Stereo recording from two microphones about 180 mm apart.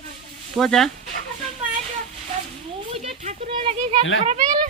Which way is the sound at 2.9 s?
35° right (ahead or behind).